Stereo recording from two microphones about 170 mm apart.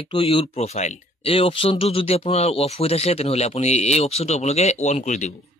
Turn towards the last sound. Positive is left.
turn(degrees=45)  # may be behind; listen again after turning